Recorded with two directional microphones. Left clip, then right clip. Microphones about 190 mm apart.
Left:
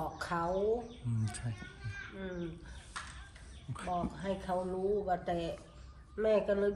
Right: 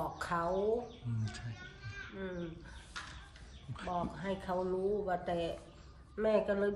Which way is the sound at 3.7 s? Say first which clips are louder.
Left 1 dB; 5° right (ahead or behind).